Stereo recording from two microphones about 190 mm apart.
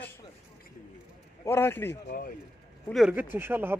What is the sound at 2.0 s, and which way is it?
Speech, 50° left (ahead or behind).